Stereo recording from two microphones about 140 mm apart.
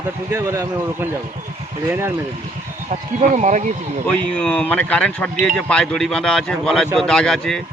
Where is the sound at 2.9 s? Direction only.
60° right (ahead or behind).